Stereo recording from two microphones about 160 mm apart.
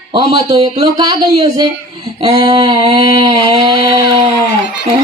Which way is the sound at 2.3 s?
25° right (ahead or behind).